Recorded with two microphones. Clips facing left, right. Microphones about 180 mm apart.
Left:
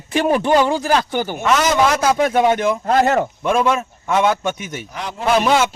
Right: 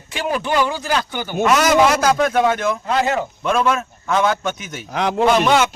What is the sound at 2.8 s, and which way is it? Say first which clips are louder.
Speech: left 5 dB; 50° left (ahead or behind).